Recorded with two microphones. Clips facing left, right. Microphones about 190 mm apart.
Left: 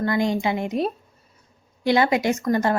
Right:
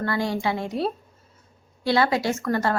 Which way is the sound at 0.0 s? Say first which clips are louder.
Left 3 dB; 15° left (ahead or behind).